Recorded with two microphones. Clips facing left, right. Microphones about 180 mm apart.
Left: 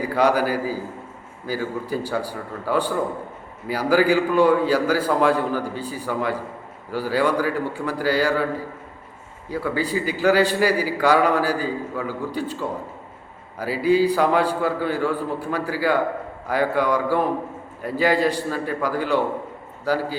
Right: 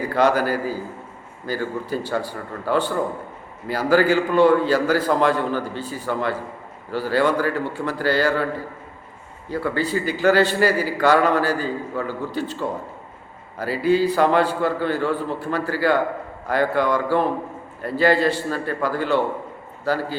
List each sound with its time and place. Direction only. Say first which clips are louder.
0.0 s a man's voice: even; 10° left (ahead or behind)
9.5 s a man's voice: right 1 dB; 10° left (ahead or behind)